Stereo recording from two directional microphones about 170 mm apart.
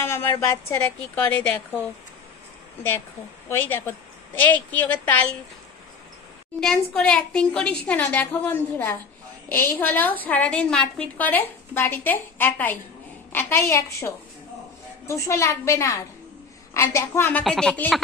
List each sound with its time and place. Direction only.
0.0 s a woman's voice: 15° left (ahead or behind)
3.4 s a woman's voice: 10° left (ahead or behind)
6.6 s a woman's voice: 5° left (ahead or behind)